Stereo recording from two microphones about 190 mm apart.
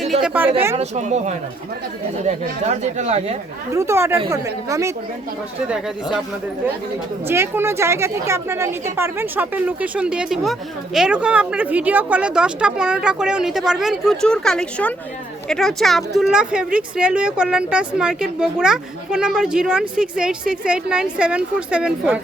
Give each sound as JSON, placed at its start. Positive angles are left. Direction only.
{"t": 0.0, "sound": "a sound", "side_deg": -5}
{"t": 0.8, "sound": "speech", "side_deg": -40}
{"t": 3.7, "sound": "a woman's voice", "side_deg": -15}
{"t": 5.6, "sound": "speech", "side_deg": -5}
{"t": 7.3, "sound": "a woman's voice", "side_deg": -10}